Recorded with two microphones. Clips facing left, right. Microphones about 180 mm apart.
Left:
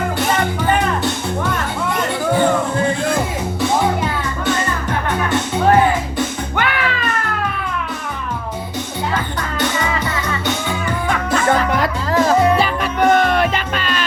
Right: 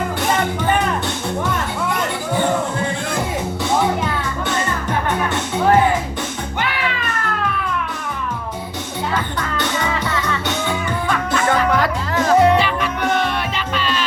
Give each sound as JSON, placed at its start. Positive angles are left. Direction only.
{"t": 6.6, "sound": "music", "side_deg": 55}
{"t": 12.1, "sound": "music", "side_deg": 40}